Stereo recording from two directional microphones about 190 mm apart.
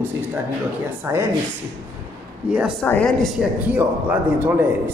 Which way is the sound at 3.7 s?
10° right (ahead or behind).